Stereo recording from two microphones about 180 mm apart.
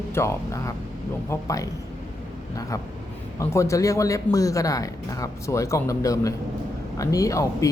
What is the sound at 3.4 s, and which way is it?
A man's voice, 15° left (ahead or behind).